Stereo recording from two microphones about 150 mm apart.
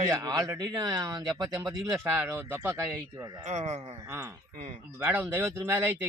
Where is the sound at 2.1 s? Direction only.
10° right (ahead or behind).